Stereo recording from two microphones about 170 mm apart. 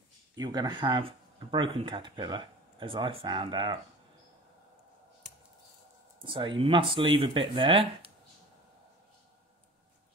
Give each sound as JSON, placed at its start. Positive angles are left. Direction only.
{"t": 0.4, "sound": "speech", "side_deg": -25}
{"t": 6.2, "sound": "speech", "side_deg": -30}